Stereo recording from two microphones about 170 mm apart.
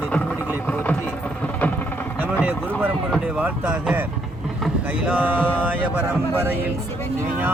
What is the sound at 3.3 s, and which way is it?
Speech, 10° right (ahead or behind).